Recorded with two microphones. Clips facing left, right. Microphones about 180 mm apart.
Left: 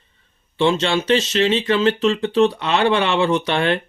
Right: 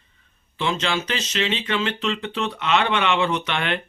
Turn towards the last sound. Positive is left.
turn(degrees=35)  # may be behind; listen again after turning